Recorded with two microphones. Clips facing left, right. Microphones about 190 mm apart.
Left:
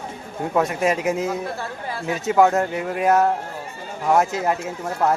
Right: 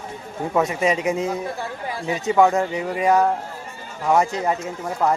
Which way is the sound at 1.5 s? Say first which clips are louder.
Right 1 dB; 15° right (ahead or behind).